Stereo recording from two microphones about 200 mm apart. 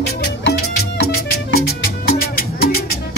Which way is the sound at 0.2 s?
60° left (ahead or behind).